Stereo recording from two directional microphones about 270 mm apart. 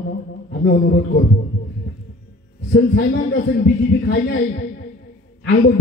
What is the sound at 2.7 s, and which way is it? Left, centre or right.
A man's voice, left.